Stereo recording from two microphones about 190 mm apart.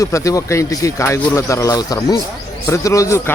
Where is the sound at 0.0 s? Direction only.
15° left (ahead or behind).